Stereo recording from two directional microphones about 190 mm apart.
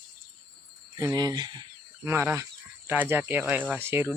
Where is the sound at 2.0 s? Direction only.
10° right (ahead or behind).